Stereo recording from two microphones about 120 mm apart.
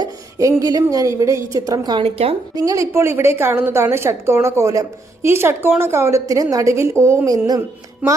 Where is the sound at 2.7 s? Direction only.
25° right (ahead or behind).